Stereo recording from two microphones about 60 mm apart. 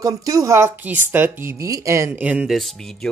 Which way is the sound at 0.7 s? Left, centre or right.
Right.